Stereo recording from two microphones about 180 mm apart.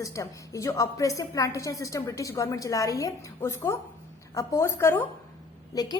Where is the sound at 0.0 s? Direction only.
20° left (ahead or behind).